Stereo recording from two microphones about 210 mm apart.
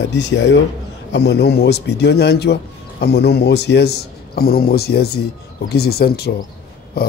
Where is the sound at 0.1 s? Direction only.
55° left (ahead or behind).